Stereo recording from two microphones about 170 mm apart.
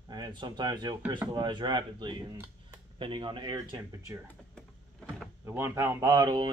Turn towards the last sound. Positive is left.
turn(degrees=-25)  # may be behind; listen again after turning